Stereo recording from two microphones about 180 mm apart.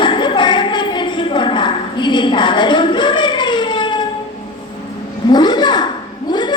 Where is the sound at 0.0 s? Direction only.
25° left (ahead or behind).